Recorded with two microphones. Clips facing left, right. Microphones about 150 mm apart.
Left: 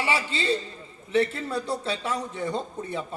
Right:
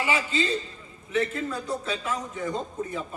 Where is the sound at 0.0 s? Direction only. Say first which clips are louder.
Right 1 dB; 30° left (ahead or behind).